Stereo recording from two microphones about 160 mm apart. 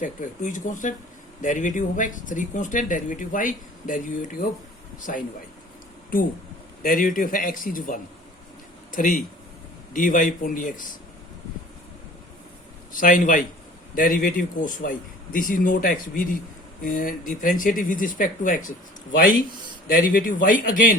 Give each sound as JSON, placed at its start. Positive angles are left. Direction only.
{"t": 0.0, "sound": "a man's voice", "side_deg": 55}
{"t": 6.8, "sound": "a man's voice", "side_deg": 60}
{"t": 12.9, "sound": "a man's voice", "side_deg": 55}
{"t": 19.9, "sound": "a man's voice", "side_deg": 60}